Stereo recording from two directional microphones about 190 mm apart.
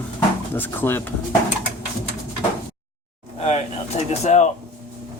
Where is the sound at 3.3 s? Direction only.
35° left (ahead or behind).